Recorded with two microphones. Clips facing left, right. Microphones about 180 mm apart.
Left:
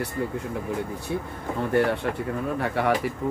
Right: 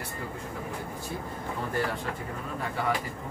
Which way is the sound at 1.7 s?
65° left (ahead or behind).